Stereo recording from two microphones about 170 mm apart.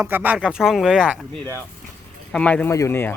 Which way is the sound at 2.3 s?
5° left (ahead or behind).